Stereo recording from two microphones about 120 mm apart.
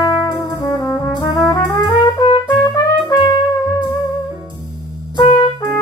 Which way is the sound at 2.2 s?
35° left (ahead or behind).